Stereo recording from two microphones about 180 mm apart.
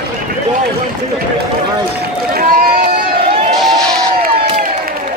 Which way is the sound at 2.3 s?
55° right (ahead or behind).